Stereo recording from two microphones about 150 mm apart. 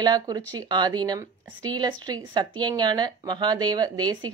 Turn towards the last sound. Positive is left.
turn(degrees=-30)  # may be behind; listen again after turning